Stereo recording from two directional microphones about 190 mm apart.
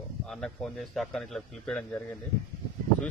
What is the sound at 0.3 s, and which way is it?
A man's voice, centre (ahead or behind).